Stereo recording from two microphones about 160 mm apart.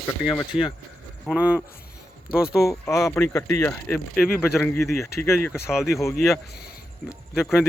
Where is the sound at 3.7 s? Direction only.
5° left (ahead or behind).